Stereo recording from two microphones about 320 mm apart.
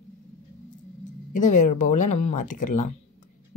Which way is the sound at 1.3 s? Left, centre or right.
Left.